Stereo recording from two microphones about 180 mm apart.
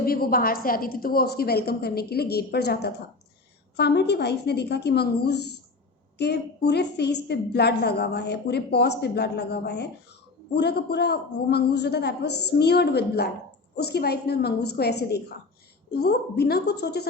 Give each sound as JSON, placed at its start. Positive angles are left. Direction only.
{"t": 0.0, "sound": "a woman's voice", "side_deg": 55}